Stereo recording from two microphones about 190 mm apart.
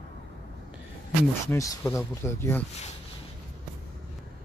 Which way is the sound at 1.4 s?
15° left (ahead or behind).